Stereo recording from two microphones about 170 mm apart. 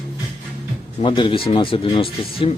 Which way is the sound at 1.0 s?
30° left (ahead or behind).